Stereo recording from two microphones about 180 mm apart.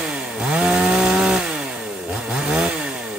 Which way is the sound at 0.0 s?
5° right (ahead or behind).